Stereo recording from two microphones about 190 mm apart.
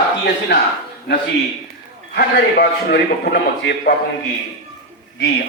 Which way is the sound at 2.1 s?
55° left (ahead or behind).